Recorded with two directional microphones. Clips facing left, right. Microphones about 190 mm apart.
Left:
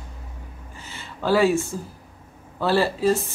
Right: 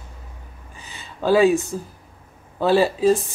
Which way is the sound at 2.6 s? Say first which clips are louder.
Right 4 dB; 15° right (ahead or behind).